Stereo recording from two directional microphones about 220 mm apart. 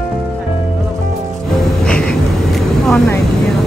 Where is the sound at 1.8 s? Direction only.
5° left (ahead or behind).